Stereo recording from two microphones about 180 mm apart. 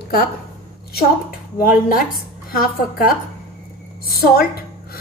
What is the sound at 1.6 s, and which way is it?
A woman's voice, 50° left (ahead or behind).